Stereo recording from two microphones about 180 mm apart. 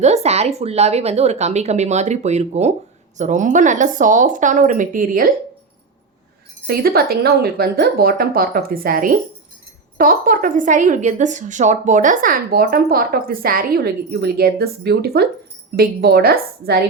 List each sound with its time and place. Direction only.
0.0 s a woman's voice: 40° right (ahead or behind)
6.7 s a woman's voice: 55° right (ahead or behind)